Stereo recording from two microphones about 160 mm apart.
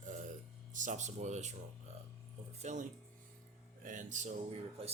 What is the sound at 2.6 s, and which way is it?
Speech, 50° right (ahead or behind).